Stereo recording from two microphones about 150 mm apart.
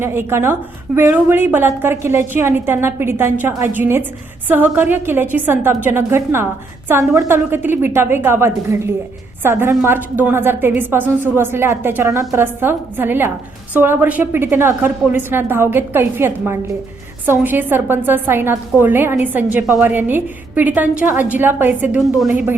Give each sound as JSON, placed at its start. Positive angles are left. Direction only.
{"t": 0.0, "sound": "a woman's voice", "side_deg": -15}